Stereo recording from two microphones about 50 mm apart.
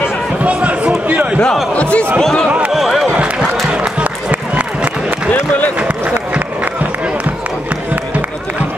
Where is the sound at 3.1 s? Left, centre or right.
Right.